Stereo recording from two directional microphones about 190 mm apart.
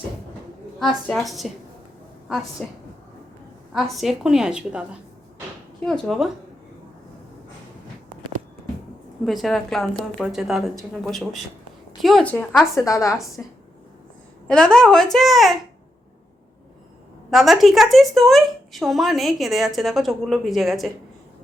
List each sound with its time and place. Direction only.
0.8 s speech: centre (ahead or behind)
3.7 s speech: centre (ahead or behind)
9.2 s speech: centre (ahead or behind)
17.3 s speech: centre (ahead or behind)